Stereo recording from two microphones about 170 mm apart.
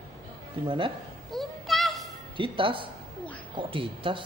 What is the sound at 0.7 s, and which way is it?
Speech, 30° right (ahead or behind).